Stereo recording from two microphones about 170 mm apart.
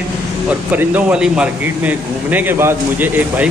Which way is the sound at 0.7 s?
5° right (ahead or behind).